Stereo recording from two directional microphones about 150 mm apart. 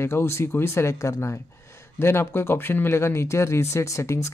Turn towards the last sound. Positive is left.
turn(degrees=20)  # may be behind; listen again after turning